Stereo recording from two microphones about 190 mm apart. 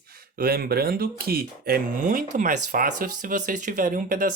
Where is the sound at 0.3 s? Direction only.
50° right (ahead or behind).